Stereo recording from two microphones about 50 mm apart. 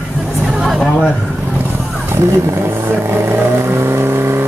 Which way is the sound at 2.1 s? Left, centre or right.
Right.